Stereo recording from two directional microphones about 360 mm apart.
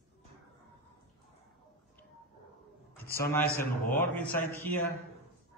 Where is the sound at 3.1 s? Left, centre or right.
Centre.